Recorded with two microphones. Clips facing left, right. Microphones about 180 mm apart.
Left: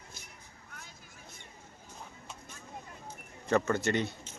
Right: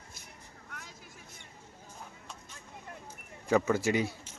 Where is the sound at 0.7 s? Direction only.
90° right.